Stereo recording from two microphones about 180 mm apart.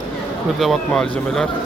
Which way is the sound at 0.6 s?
5° left (ahead or behind).